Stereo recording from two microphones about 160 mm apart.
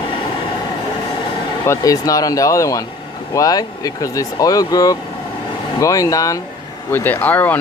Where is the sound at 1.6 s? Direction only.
20° left (ahead or behind).